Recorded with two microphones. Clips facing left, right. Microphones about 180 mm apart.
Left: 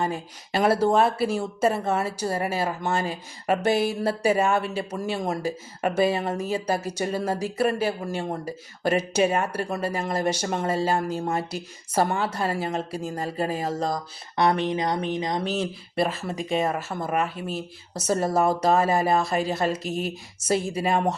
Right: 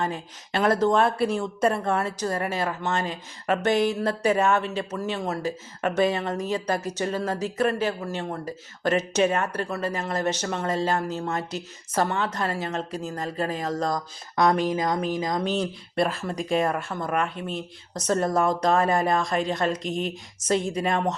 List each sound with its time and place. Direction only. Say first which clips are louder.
0.0 s speech: left 1 dB; 10° left (ahead or behind)
14.6 s speech: right 1 dB; 25° left (ahead or behind)
16.0 s speech: even; centre (ahead or behind)